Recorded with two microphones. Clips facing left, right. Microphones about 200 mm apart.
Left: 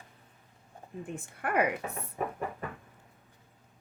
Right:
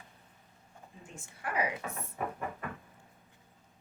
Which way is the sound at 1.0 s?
60° left (ahead or behind).